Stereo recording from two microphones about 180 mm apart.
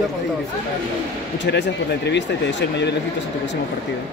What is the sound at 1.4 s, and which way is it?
Speech, 70° left (ahead or behind).